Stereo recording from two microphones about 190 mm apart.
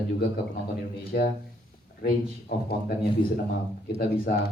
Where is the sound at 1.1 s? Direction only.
55° left (ahead or behind).